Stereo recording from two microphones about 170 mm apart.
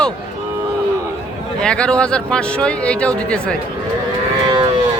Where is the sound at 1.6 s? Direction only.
5° left (ahead or behind).